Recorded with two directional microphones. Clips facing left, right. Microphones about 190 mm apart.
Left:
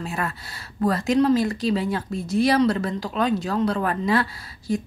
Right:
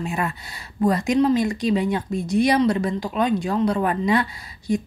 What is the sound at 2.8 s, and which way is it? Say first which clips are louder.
Speech: right 2 dB; 15° right (ahead or behind).